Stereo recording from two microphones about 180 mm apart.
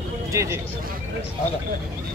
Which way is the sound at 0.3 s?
15° right (ahead or behind).